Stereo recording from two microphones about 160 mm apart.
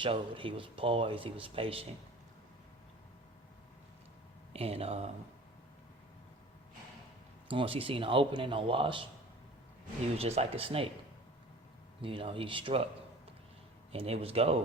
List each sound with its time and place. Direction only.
0.0 s speech: 30° right (ahead or behind)
4.5 s speech: 40° right (ahead or behind)
7.5 s speech: 35° right (ahead or behind)
10.2 s speech: 40° right (ahead or behind)
12.0 s speech: 35° right (ahead or behind)
13.9 s speech: 35° right (ahead or behind)